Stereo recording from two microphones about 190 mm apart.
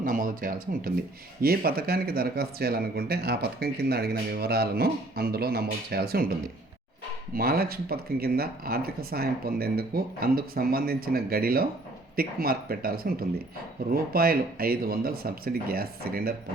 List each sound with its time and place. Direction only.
0.0 s speech: 45° right (ahead or behind)
7.3 s speech: 50° right (ahead or behind)